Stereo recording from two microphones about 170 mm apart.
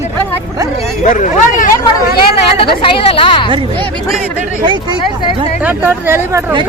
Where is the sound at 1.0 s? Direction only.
50° left (ahead or behind).